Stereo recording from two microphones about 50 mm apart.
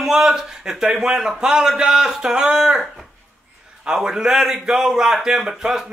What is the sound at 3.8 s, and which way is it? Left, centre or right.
A man's voice, centre.